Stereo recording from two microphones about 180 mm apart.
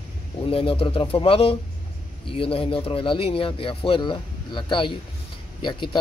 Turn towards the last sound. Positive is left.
turn(degrees=25)  # may be behind; listen again after turning